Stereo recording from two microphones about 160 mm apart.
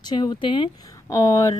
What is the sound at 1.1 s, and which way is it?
Speech, 20° left (ahead or behind).